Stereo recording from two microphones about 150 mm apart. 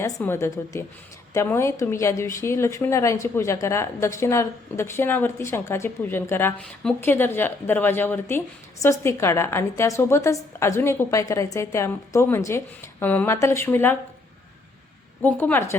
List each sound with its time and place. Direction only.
0.0 s speech: 15° left (ahead or behind)
15.2 s speech: 10° left (ahead or behind)